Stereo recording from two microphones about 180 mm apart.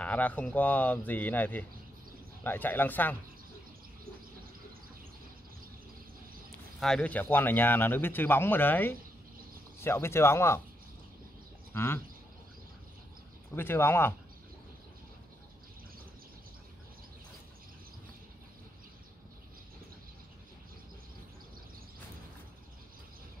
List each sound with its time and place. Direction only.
0.0 s speech: 10° left (ahead or behind)
6.8 s speech: 5° left (ahead or behind)
11.7 s speech: 15° left (ahead or behind)
13.6 s speech: 10° left (ahead or behind)